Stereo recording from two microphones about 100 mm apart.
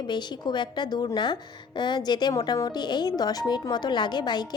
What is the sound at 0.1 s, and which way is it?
A woman's voice, 50° left (ahead or behind).